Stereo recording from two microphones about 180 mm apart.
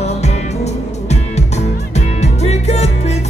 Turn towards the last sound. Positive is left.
turn(degrees=40)  # may be behind; listen again after turning